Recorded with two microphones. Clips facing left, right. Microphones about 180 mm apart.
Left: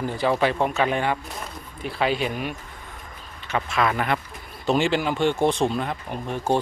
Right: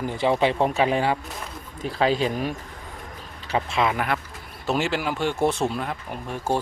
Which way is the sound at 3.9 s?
5° right (ahead or behind).